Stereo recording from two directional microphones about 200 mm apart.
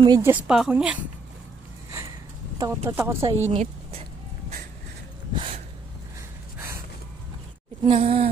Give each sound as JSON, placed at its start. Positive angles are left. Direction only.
{"t": 0.0, "sound": "speech", "side_deg": -20}
{"t": 0.3, "sound": "speech", "side_deg": -5}
{"t": 2.6, "sound": "speech", "side_deg": -15}
{"t": 3.4, "sound": "a woman's voice", "side_deg": -35}
{"t": 5.3, "sound": "a sound", "side_deg": -25}
{"t": 7.8, "sound": "speech", "side_deg": -30}